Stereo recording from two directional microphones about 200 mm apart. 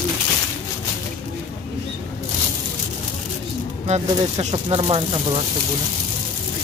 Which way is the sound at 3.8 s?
35° right (ahead or behind).